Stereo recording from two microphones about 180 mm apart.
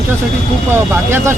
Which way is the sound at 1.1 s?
15° right (ahead or behind).